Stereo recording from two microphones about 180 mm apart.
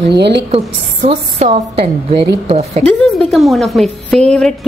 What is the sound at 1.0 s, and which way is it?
A woman's voice, 30° right (ahead or behind).